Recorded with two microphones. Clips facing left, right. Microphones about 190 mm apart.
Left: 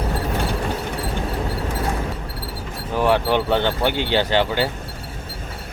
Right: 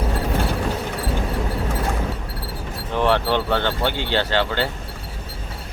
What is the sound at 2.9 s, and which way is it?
Speech, 10° left (ahead or behind).